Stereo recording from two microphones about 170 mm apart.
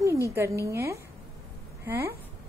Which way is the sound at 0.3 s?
15° right (ahead or behind).